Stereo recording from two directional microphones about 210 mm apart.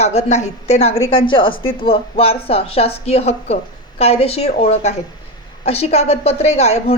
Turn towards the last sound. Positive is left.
turn(degrees=30)  # may be behind; listen again after turning